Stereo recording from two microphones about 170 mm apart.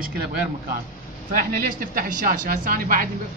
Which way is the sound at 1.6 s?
55° right (ahead or behind).